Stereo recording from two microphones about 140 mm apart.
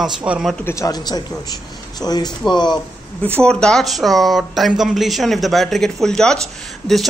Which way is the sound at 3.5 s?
5° left (ahead or behind).